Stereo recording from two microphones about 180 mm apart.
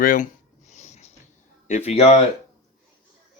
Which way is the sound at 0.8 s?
40° left (ahead or behind).